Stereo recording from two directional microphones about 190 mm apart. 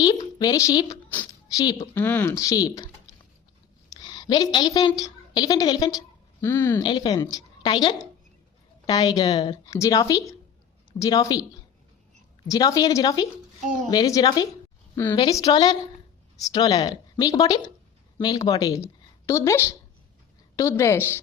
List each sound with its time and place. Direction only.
0.0 s a woman's voice: 20° left (ahead or behind)
1.1 s a sound: 10° left (ahead or behind)
1.6 s speech: 10° left (ahead or behind)
3.9 s a woman's voice: 25° left (ahead or behind)
6.8 s a woman's voice: 25° left (ahead or behind)
12.5 s a woman's voice: 20° left (ahead or behind)